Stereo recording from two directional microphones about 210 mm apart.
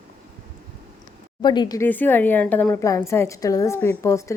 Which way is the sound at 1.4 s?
20° left (ahead or behind).